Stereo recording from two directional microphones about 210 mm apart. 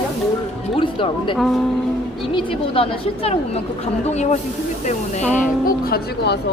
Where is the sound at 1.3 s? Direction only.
Centre (ahead or behind).